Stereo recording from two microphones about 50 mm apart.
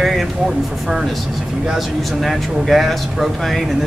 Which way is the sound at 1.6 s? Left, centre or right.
Centre.